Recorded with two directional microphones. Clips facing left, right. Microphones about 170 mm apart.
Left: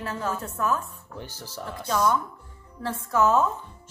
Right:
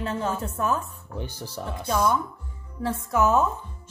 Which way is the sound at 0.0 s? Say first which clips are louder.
Right 3 dB; 20° right (ahead or behind).